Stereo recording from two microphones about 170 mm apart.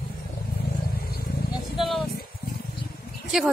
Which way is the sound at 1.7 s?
Centre (ahead or behind).